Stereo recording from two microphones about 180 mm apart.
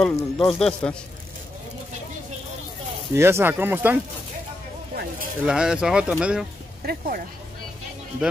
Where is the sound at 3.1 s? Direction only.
15° right (ahead or behind).